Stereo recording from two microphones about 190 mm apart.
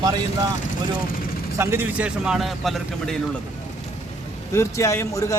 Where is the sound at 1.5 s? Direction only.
15° right (ahead or behind).